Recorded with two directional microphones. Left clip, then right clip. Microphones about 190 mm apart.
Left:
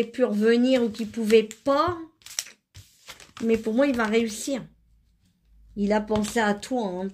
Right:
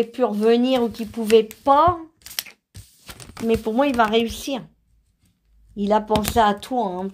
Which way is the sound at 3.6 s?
5° left (ahead or behind).